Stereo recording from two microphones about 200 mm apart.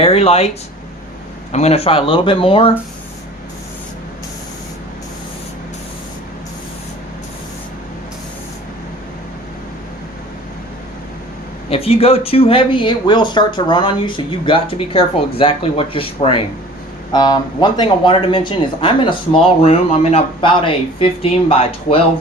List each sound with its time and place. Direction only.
0.0 s speech: 30° left (ahead or behind)
1.5 s speech: 30° left (ahead or behind)
11.7 s speech: 30° left (ahead or behind)